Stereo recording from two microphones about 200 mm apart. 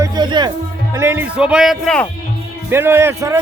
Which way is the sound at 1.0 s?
10° right (ahead or behind).